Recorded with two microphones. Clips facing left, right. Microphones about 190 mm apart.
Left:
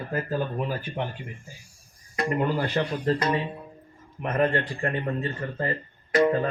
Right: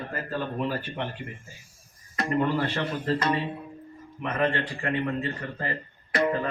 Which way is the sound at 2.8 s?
25° left (ahead or behind).